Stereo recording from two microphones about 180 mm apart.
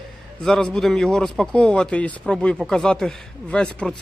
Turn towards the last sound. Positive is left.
turn(degrees=5)  # may be behind; listen again after turning